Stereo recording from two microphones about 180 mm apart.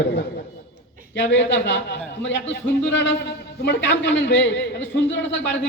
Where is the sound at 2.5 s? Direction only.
90° left.